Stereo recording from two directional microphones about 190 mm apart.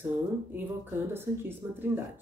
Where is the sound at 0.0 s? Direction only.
10° right (ahead or behind).